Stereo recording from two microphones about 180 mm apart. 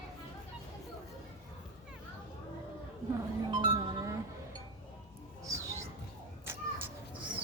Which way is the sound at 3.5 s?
25° right (ahead or behind).